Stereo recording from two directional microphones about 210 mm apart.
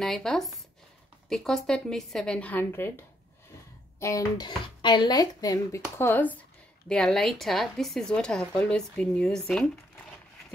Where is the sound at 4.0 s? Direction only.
15° left (ahead or behind).